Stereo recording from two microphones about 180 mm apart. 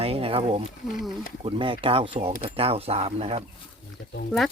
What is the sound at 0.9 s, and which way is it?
Speech, centre (ahead or behind).